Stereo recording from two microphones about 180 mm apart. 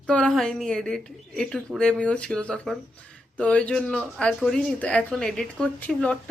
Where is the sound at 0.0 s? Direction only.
5° left (ahead or behind).